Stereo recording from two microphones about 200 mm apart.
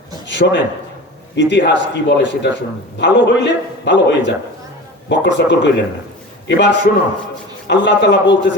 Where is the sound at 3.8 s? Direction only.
60° left (ahead or behind).